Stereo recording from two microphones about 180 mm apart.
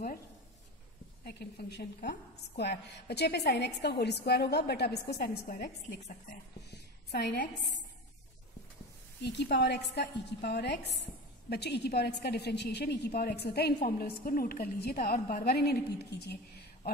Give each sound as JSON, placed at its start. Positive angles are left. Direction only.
{"t": 1.2, "sound": "a woman's voice", "side_deg": 60}
{"t": 6.7, "sound": "a woman's voice", "side_deg": 60}
{"t": 9.2, "sound": "a woman's voice", "side_deg": 70}